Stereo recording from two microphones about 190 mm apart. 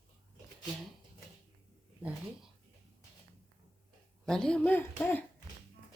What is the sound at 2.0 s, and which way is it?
Speech, 5° right (ahead or behind).